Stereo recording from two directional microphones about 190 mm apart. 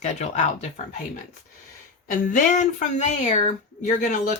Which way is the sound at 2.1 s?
40° left (ahead or behind).